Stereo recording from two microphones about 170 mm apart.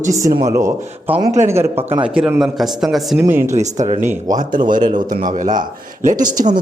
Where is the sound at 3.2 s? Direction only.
15° right (ahead or behind).